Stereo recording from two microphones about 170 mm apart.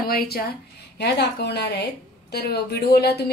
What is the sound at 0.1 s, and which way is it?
Speech, 60° left (ahead or behind).